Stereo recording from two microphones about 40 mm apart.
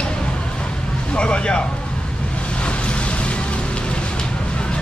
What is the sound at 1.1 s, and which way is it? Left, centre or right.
Speech, left.